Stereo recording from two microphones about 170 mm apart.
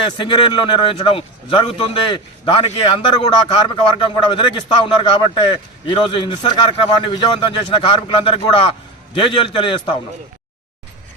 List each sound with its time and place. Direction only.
0.0 s a man's voice: 30° left (ahead or behind)